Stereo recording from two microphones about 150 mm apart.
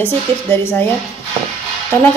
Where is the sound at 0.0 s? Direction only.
15° left (ahead or behind).